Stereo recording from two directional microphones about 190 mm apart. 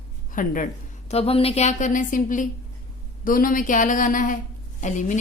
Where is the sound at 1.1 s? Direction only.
30° left (ahead or behind).